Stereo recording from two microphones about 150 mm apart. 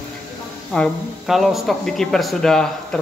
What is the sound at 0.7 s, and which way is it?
Speech, centre (ahead or behind).